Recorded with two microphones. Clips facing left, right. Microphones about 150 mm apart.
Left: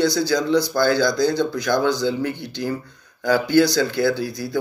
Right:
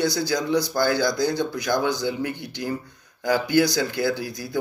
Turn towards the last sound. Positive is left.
turn(degrees=-15)  # may be behind; listen again after turning